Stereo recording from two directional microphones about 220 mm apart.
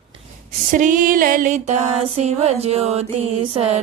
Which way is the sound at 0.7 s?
35° right (ahead or behind).